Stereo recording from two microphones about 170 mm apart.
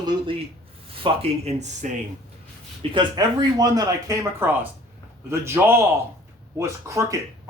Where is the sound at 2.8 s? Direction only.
25° right (ahead or behind).